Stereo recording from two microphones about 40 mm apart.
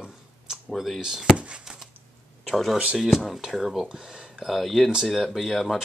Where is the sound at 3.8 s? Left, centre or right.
Centre.